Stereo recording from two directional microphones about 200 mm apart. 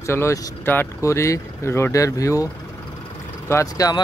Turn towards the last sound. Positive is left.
turn(degrees=20)  # may be behind; listen again after turning